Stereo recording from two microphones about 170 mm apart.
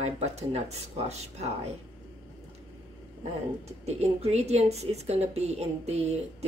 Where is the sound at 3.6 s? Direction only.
40° right (ahead or behind).